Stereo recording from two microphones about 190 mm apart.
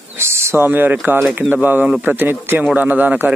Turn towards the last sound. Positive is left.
turn(degrees=-10)  # may be behind; listen again after turning